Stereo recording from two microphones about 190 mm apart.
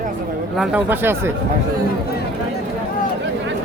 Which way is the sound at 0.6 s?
5° right (ahead or behind).